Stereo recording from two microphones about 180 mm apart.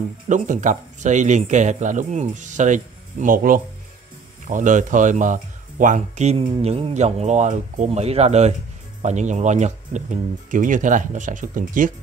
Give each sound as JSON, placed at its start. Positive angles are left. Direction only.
{"t": 0.3, "sound": "speech", "side_deg": -45}